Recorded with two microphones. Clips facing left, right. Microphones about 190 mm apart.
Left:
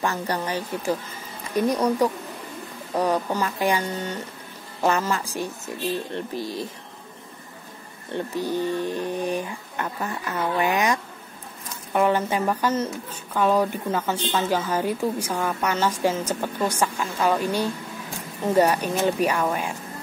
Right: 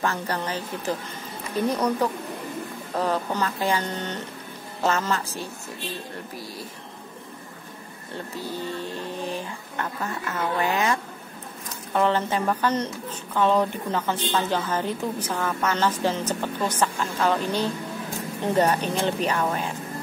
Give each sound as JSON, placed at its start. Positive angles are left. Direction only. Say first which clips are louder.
{"t": 0.0, "sound": "a woman's voice", "louder": "left 1 dB", "side_deg": 15}
{"t": 8.4, "sound": "a woman's voice", "louder": "left 7 dB", "side_deg": 15}